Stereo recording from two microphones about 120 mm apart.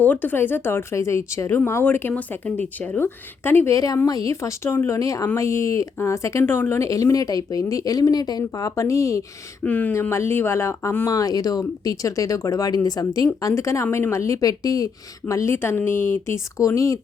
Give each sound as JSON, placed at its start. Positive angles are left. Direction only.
{"t": 0.0, "sound": "speech", "side_deg": 15}
{"t": 9.6, "sound": "speech", "side_deg": 15}